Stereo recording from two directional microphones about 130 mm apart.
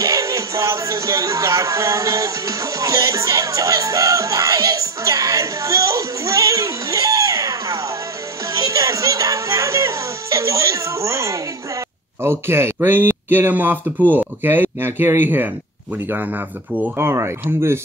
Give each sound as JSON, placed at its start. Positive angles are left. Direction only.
{"t": 0.0, "sound": "music", "side_deg": -25}
{"t": 12.2, "sound": "speech", "side_deg": -20}
{"t": 13.8, "sound": "speech", "side_deg": 10}
{"t": 14.1, "sound": "speech", "side_deg": -15}
{"t": 16.7, "sound": "speech", "side_deg": -15}